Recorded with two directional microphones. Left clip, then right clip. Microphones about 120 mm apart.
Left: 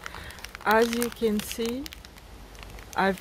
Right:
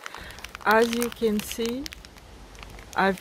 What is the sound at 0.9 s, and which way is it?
Speech, 15° left (ahead or behind).